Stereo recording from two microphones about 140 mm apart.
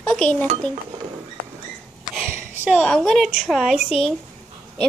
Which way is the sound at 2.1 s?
10° right (ahead or behind).